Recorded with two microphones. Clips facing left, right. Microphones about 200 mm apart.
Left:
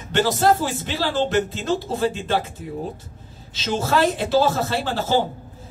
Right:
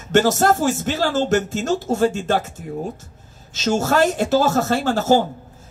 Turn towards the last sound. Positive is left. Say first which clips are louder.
# right 5 dB
turn(degrees=-45)  # may be behind; listen again after turning